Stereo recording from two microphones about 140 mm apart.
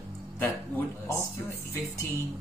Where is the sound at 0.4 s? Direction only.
15° left (ahead or behind).